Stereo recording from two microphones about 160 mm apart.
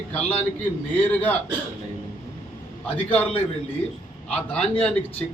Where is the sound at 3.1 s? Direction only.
40° left (ahead or behind).